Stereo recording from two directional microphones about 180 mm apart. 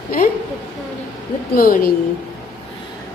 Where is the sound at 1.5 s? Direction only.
50° left (ahead or behind).